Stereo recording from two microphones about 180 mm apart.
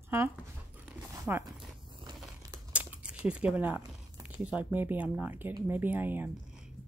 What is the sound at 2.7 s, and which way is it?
A woman's voice, 5° right (ahead or behind).